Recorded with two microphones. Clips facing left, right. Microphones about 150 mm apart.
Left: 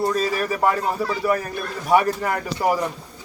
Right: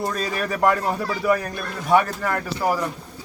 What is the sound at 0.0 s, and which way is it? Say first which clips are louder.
Speech: left 4 dB; 5° left (ahead or behind).